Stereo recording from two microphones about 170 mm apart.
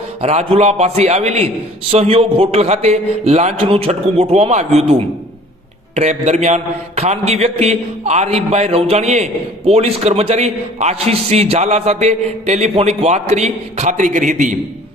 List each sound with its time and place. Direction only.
0.2 s mantra: 40° right (ahead or behind)